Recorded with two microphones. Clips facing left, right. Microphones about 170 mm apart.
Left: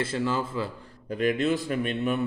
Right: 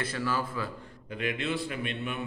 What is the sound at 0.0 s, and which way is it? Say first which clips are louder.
Speech: left 4 dB; 25° left (ahead or behind).